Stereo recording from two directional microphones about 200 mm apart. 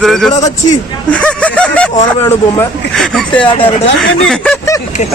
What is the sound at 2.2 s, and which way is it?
A man's voice, 5° left (ahead or behind).